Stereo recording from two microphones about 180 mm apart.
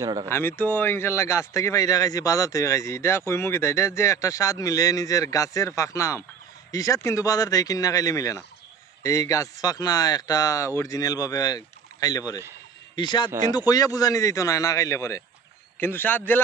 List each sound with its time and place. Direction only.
0.0 s speech: 20° right (ahead or behind)
0.3 s speech: 10° left (ahead or behind)